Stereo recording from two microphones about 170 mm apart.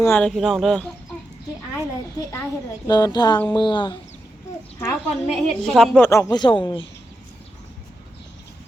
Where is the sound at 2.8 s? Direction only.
25° left (ahead or behind).